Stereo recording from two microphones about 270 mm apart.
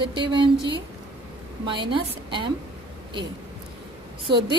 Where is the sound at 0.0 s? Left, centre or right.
Centre.